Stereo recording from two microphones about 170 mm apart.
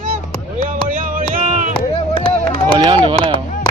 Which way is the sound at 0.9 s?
50° right (ahead or behind).